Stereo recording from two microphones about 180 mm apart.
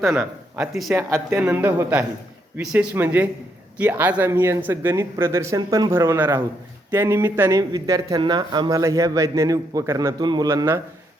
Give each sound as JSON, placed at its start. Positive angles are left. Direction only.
{"t": 0.1, "sound": "speech", "side_deg": -5}